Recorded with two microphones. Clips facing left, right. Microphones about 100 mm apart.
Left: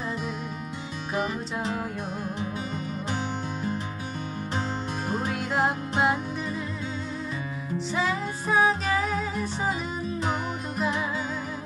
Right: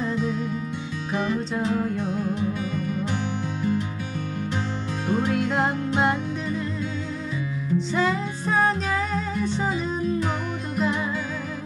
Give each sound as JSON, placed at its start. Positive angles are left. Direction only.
{"t": 5.3, "sound": "music", "side_deg": 5}
{"t": 7.9, "sound": "music", "side_deg": 5}